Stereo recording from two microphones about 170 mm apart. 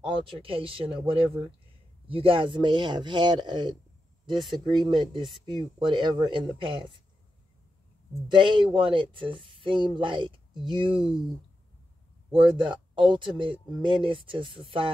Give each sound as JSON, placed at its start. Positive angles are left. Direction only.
{"t": 0.0, "sound": "speech", "side_deg": -30}
{"t": 8.3, "sound": "speech", "side_deg": -25}
{"t": 12.3, "sound": "speech", "side_deg": -30}